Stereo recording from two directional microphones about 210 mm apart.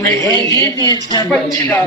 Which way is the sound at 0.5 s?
20° right (ahead or behind).